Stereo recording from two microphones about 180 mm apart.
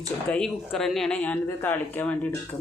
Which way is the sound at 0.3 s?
5° left (ahead or behind).